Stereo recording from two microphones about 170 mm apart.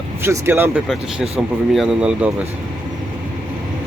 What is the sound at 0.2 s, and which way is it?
Speech, 15° right (ahead or behind).